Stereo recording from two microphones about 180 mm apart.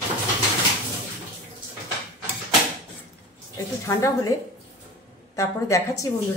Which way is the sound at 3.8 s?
15° left (ahead or behind).